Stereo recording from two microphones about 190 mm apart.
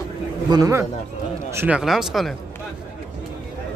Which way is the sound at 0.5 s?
20° right (ahead or behind).